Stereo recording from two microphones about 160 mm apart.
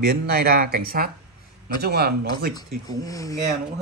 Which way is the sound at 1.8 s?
90° right.